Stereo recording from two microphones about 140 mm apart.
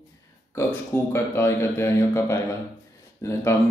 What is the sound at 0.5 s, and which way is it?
A man's voice, 15° left (ahead or behind).